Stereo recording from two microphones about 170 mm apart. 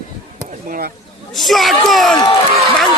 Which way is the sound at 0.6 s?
55° right (ahead or behind).